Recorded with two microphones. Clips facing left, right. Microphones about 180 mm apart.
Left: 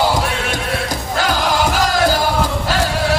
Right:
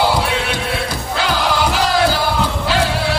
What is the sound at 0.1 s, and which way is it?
Music, 45° left (ahead or behind).